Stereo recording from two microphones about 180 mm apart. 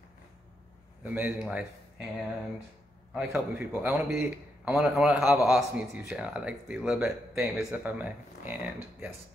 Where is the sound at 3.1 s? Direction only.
10° right (ahead or behind).